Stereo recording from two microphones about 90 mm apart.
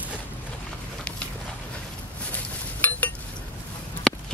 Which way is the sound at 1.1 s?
15° left (ahead or behind).